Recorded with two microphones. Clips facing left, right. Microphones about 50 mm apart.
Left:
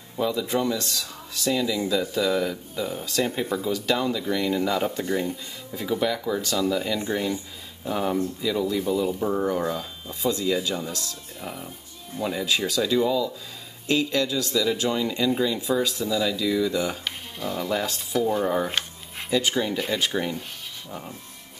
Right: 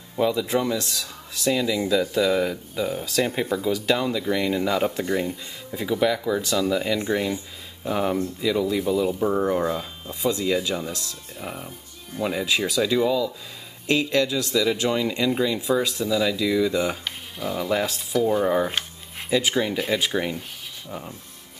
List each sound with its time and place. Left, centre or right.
0.1 s speech: centre
16.7 s speech: right
17.0 s speech: centre
18.7 s a sound: centre
19.8 s speech: centre